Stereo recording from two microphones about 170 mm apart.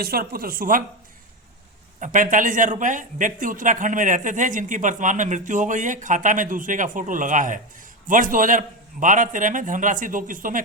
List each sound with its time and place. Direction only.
0.0 s speech: 60° right (ahead or behind)
2.0 s a man's voice: 50° right (ahead or behind)